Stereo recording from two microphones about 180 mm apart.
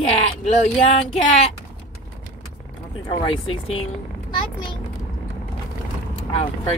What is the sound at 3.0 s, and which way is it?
Speech, 30° left (ahead or behind).